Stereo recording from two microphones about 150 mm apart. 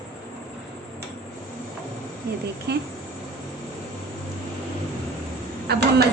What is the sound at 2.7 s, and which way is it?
Speech, 90° right.